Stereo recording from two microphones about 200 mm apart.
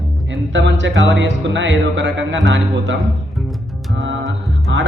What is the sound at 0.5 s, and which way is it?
Speech, 65° right (ahead or behind).